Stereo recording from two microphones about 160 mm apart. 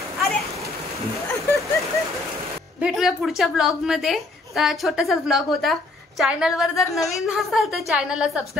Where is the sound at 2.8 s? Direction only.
Centre (ahead or behind).